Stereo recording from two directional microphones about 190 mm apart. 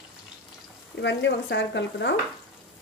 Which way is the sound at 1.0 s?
70° left (ahead or behind).